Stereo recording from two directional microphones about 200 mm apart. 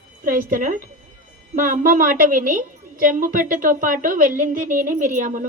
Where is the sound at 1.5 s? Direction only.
40° right (ahead or behind).